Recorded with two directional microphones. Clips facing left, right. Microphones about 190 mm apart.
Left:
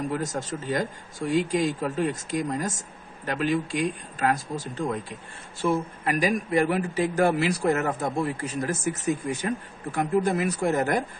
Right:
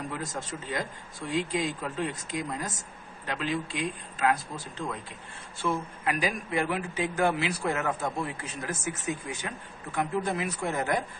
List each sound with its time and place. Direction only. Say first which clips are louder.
0.1 s speech: left 6 dB; 45° left (ahead or behind)
6.0 s a man's voice: left 5 dB; 40° left (ahead or behind)